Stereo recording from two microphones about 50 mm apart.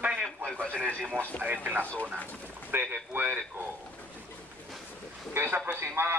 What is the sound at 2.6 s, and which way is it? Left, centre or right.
Speech, right.